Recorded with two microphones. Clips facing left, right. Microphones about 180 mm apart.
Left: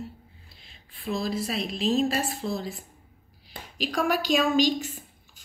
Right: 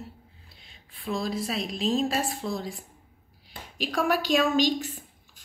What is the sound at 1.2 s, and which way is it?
Speech, centre (ahead or behind).